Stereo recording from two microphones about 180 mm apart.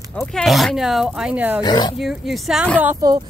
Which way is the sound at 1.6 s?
25° left (ahead or behind).